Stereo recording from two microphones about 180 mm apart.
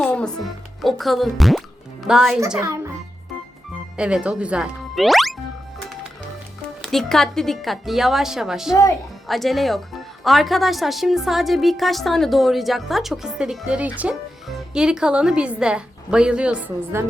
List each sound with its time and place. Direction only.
0.0 s a woman's voice: 5° left (ahead or behind)
2.6 s a child's voice: 15° right (ahead or behind)
3.9 s speech: 5° right (ahead or behind)
6.8 s a woman's voice: centre (ahead or behind)